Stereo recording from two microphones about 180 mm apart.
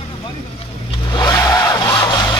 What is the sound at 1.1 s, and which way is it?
Vehicle, 20° left (ahead or behind).